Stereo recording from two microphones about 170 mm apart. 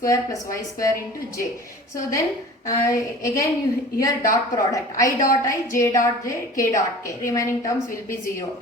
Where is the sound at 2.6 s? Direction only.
20° left (ahead or behind).